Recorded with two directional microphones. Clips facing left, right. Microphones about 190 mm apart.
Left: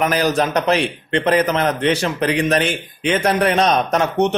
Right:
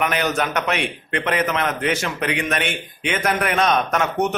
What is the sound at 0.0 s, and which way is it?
Speech, 35° left (ahead or behind).